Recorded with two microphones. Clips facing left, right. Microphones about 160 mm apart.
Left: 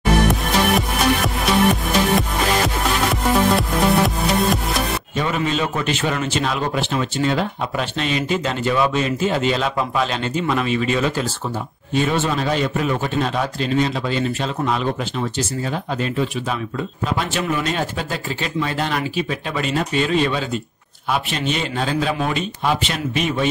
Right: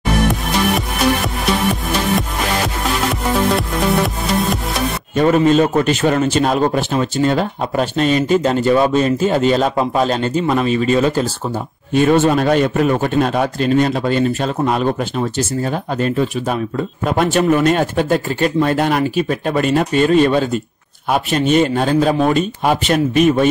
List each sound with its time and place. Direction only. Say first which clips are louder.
0.3 s music: right 1 dB; centre (ahead or behind)
3.5 s music: right 1 dB; centre (ahead or behind)
5.1 s a man's voice: right 11 dB; 45° right (ahead or behind)
11.9 s speech: right 7 dB; 50° right (ahead or behind)